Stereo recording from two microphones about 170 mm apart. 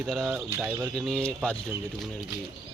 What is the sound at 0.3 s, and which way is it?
Speech, 10° right (ahead or behind).